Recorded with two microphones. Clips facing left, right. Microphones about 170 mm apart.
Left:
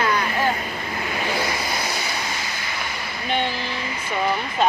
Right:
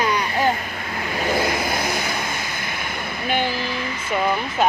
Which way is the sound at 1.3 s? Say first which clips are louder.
Right 4 dB; 50° right (ahead or behind).